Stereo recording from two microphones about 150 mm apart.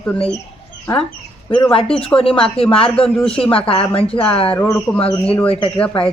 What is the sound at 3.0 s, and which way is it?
Speech, 5° left (ahead or behind).